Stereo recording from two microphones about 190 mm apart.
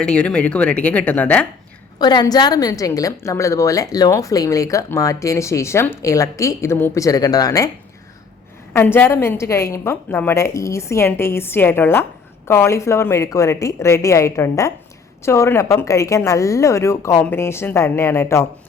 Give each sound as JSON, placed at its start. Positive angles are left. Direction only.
{"t": 0.0, "sound": "a woman's voice", "side_deg": 5}
{"t": 2.0, "sound": "a woman's voice", "side_deg": 20}
{"t": 8.7, "sound": "a woman's voice", "side_deg": 10}